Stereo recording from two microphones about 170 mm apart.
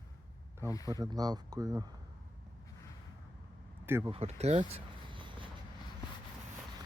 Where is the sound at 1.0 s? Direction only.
20° right (ahead or behind).